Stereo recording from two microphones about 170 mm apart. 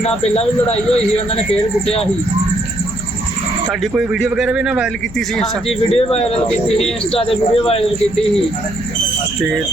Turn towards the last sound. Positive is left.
turn(degrees=35)  # may be behind; listen again after turning